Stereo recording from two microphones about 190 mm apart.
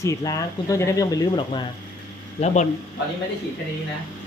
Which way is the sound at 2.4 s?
35° left (ahead or behind).